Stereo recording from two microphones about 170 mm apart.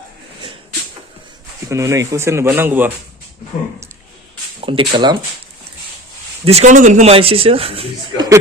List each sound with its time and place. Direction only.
1.7 s speech: 15° right (ahead or behind)
4.6 s speech: 30° right (ahead or behind)
6.4 s speech: 40° right (ahead or behind)